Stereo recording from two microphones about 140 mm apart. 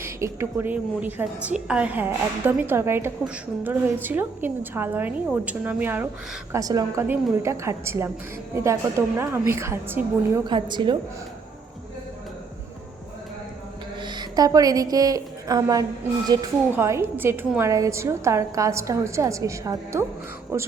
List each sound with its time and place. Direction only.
0.0 s a woman's voice: 20° right (ahead or behind)
6.5 s a woman's voice: 25° right (ahead or behind)
10.4 s a woman's voice: 35° right (ahead or behind)
14.0 s a woman's voice: 30° right (ahead or behind)